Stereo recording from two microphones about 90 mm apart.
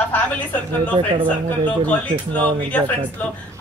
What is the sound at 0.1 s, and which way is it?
Speech, 20° left (ahead or behind).